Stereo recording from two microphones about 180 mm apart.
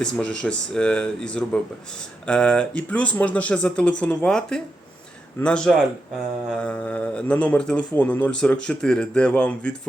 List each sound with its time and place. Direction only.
0.0 s speech: 5° left (ahead or behind)